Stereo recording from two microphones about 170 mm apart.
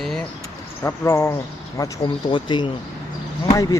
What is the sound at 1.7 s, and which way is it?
Speech, 25° left (ahead or behind).